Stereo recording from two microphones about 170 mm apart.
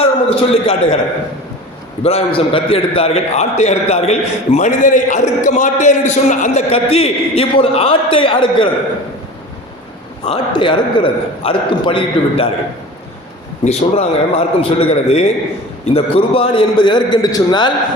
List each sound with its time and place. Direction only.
0.0 s a man's voice: 35° left (ahead or behind)
2.0 s a man's voice: 35° left (ahead or behind)
10.2 s a man's voice: 30° left (ahead or behind)
13.7 s a man's voice: 40° left (ahead or behind)